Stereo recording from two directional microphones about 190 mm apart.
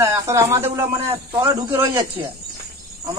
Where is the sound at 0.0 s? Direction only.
15° right (ahead or behind).